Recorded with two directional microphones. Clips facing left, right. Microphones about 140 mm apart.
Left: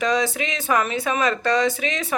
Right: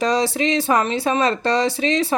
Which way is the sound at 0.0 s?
35° right (ahead or behind).